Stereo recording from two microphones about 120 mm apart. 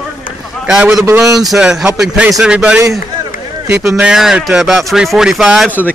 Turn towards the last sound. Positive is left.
turn(degrees=-10)  # may be behind; listen again after turning